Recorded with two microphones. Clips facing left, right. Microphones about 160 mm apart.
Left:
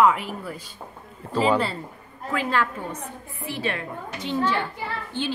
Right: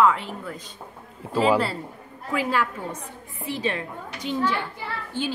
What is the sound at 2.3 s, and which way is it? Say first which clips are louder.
A child's voice: even; 10° right (ahead or behind).